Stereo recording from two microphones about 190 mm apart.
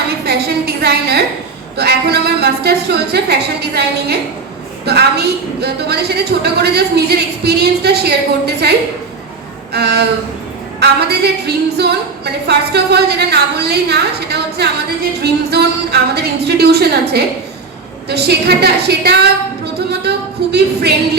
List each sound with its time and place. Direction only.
0.3 s a sound: 55° right (ahead or behind)
1.7 s a woman's voice: 60° right (ahead or behind)
9.7 s a woman's voice: 60° right (ahead or behind)